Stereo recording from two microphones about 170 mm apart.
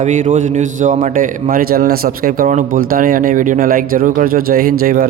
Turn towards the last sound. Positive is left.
turn(degrees=-60)  # may be behind; listen again after turning